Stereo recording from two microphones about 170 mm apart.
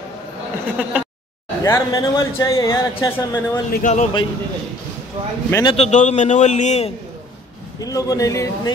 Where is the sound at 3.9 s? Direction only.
45° left (ahead or behind).